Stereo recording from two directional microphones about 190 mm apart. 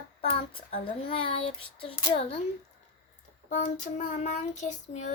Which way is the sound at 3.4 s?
45° left (ahead or behind).